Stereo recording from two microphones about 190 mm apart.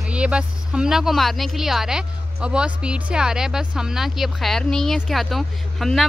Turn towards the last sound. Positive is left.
turn(degrees=0)  # may be behind; listen again after turning